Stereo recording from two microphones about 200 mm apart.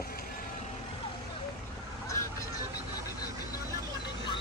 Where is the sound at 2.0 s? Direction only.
15° left (ahead or behind).